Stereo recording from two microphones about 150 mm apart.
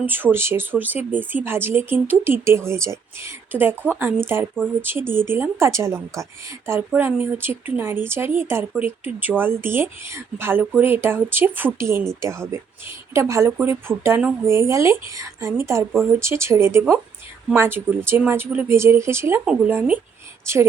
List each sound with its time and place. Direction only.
0.0 s a woman's voice: 15° right (ahead or behind)